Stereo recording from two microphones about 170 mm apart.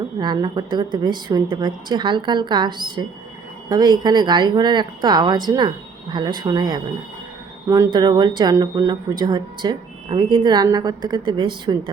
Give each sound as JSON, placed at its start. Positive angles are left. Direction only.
{"t": 0.2, "sound": "speech", "side_deg": -25}
{"t": 7.9, "sound": "speech", "side_deg": -25}